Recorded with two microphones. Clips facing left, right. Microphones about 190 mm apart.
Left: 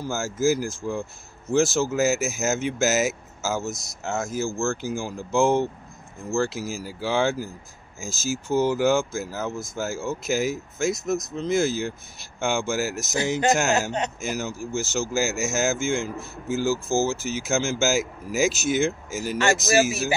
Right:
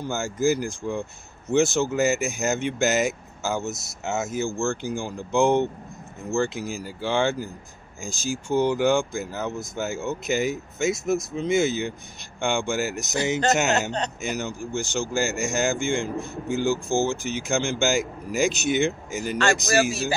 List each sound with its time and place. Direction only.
0.0 s speech: centre (ahead or behind)